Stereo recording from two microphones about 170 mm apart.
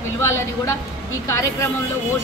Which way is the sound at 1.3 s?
15° left (ahead or behind).